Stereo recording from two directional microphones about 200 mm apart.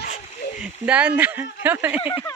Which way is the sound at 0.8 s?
5° right (ahead or behind).